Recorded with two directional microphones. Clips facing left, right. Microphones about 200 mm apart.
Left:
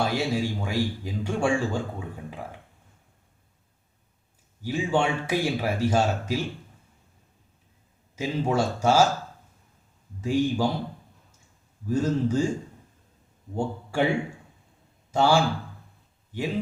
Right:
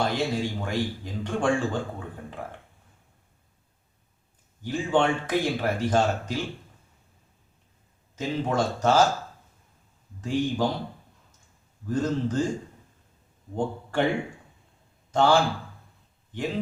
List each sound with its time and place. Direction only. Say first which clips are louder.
0.0 s a man's voice: left 1 dB; 10° left (ahead or behind)
4.6 s a man's voice: right 1 dB; 10° left (ahead or behind)
8.1 s a man's voice: left 1 dB; 10° left (ahead or behind)
10.2 s a man's voice: left 2 dB; 10° left (ahead or behind)
11.9 s a man's voice: left 2 dB; 10° left (ahead or behind)
13.6 s a man's voice: even; 10° left (ahead or behind)
15.1 s a man's voice: right 1 dB; 10° left (ahead or behind)